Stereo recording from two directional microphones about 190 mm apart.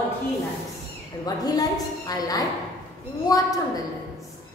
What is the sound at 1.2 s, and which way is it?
A woman's voice, 20° left (ahead or behind).